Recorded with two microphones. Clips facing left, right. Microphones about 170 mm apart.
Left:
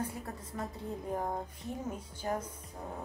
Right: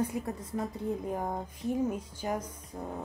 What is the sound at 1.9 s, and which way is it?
Speech, 10° right (ahead or behind).